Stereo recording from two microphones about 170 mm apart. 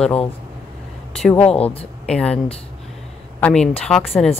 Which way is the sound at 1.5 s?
35° left (ahead or behind).